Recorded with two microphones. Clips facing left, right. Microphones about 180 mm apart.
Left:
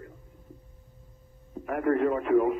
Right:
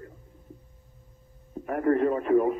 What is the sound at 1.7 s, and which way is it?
Speech, 35° right (ahead or behind).